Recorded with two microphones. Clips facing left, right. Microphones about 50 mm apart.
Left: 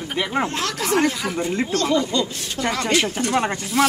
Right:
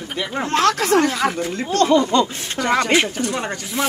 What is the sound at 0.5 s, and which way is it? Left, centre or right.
Speech, right.